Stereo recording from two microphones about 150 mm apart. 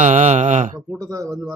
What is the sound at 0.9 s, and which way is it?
Speech, 20° right (ahead or behind).